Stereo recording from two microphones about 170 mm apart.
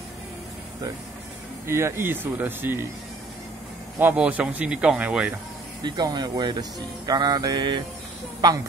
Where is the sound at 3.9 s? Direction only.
10° right (ahead or behind).